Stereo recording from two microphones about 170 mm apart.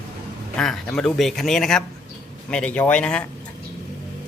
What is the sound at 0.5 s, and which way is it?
A man's voice, 5° left (ahead or behind).